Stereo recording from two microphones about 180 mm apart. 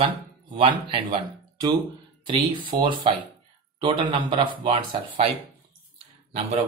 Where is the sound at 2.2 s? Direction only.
25° right (ahead or behind).